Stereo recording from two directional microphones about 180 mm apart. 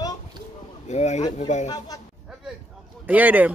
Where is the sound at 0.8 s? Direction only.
40° left (ahead or behind).